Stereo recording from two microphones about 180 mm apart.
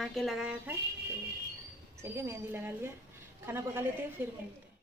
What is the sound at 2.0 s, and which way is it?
A woman's voice, 15° right (ahead or behind).